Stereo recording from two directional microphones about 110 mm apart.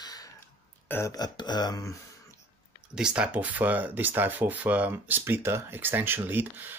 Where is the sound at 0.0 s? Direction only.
35° left (ahead or behind).